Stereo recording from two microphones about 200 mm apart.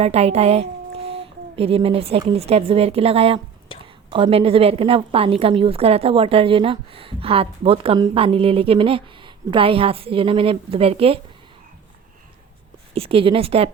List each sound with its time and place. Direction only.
0.0 s a woman's voice: 30° right (ahead or behind)
12.9 s a woman's voice: 30° right (ahead or behind)